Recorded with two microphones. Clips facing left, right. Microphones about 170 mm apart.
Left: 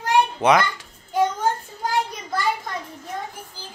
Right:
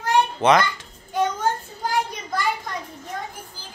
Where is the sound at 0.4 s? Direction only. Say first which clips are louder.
Right 1 dB; 10° left (ahead or behind).